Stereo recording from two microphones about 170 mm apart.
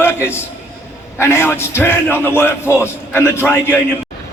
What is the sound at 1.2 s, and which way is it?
A man's voice, 15° left (ahead or behind).